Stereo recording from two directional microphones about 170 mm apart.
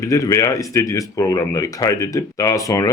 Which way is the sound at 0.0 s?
15° left (ahead or behind).